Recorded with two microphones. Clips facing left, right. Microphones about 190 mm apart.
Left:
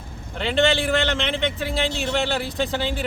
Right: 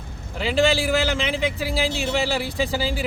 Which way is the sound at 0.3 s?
Centre (ahead or behind).